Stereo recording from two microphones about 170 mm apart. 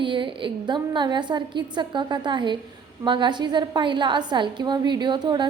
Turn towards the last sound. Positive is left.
turn(degrees=-25)  # may be behind; listen again after turning